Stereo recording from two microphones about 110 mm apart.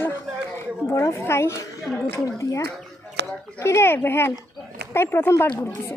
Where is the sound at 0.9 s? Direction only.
25° left (ahead or behind).